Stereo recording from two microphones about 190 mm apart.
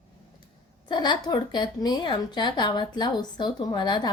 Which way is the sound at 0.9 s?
25° left (ahead or behind).